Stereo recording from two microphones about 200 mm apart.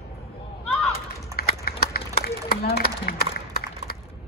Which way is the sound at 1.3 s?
15° right (ahead or behind).